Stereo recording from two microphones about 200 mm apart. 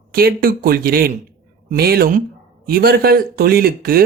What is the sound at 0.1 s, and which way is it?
Speech, 50° right (ahead or behind).